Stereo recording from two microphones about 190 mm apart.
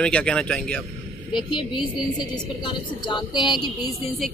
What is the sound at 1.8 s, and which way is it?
A woman's voice, 25° left (ahead or behind).